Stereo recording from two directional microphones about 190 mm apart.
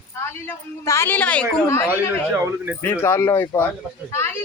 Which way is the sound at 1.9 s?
10° right (ahead or behind).